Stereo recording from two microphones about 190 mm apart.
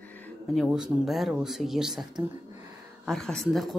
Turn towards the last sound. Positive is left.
turn(degrees=0)  # may be behind; listen again after turning